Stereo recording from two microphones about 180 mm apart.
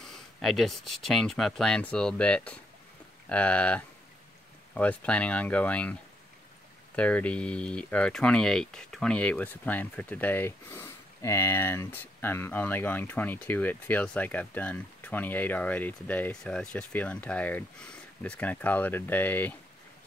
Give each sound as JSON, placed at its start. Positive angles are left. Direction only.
{"t": 0.0, "sound": "speech", "side_deg": 0}
{"t": 7.0, "sound": "speech", "side_deg": 5}